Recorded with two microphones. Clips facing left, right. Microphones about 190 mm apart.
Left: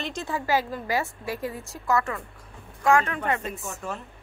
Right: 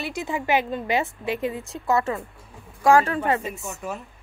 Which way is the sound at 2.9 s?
35° right (ahead or behind).